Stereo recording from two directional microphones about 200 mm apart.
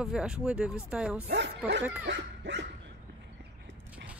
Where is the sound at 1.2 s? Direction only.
60° right (ahead or behind).